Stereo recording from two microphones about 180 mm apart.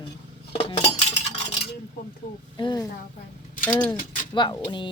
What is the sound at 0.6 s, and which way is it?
Cutlery, 30° left (ahead or behind).